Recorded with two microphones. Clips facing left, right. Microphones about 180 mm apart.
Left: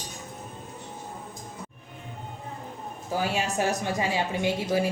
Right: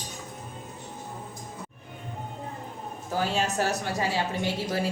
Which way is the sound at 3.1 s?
10° left (ahead or behind).